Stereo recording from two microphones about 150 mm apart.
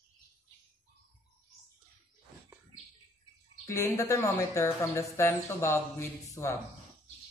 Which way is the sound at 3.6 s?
20° left (ahead or behind).